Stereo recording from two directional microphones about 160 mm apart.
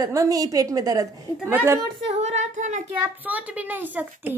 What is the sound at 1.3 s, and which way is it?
Speech, 10° right (ahead or behind).